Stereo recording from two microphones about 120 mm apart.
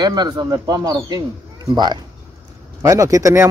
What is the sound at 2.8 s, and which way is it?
Speech, 25° right (ahead or behind).